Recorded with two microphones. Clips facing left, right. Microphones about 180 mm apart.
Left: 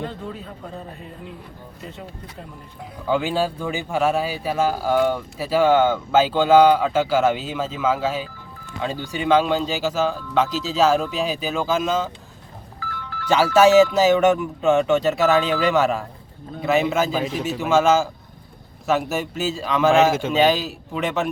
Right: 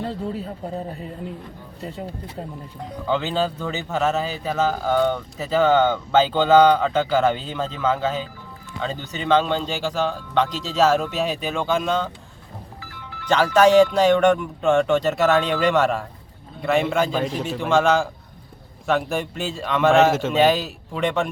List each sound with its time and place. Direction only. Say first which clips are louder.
0.0 s a man's voice: right 3 dB; 35° right (ahead or behind)
1.8 s speech: right 6 dB; 35° right (ahead or behind)
3.1 s speech: left 1 dB; 10° left (ahead or behind)
13.2 s speech: left 1 dB; 5° left (ahead or behind)